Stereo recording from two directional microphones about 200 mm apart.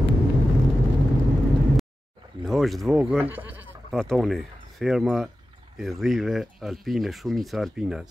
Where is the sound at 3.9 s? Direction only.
Centre (ahead or behind).